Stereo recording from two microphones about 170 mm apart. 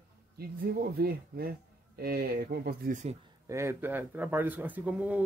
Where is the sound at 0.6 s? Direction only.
65° right (ahead or behind).